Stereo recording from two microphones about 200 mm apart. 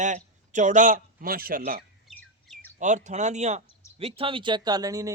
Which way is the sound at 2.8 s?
35° right (ahead or behind).